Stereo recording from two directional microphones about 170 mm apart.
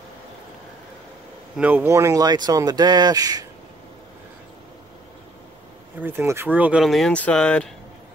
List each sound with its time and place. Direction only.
1.6 s speech: 10° right (ahead or behind)
5.9 s speech: 10° right (ahead or behind); by 7.7 s 5° left (ahead or behind)